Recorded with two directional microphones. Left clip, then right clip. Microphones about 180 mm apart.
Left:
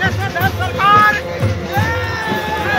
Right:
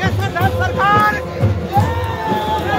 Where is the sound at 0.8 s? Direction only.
30° right (ahead or behind).